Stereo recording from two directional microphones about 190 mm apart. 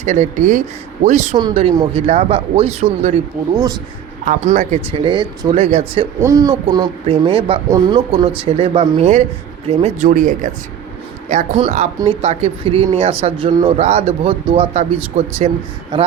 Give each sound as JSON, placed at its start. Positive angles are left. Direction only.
{"t": 0.0, "sound": "speech", "side_deg": -40}
{"t": 1.4, "sound": "speech", "side_deg": -25}
{"t": 3.5, "sound": "speech", "side_deg": -20}
{"t": 4.3, "sound": "speech", "side_deg": -40}
{"t": 6.2, "sound": "speech", "side_deg": -20}